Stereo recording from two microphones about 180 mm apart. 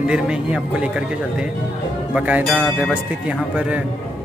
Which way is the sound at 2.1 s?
10° right (ahead or behind).